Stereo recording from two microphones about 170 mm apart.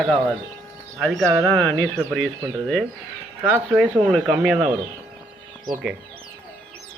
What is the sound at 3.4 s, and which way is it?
Speech, 5° right (ahead or behind).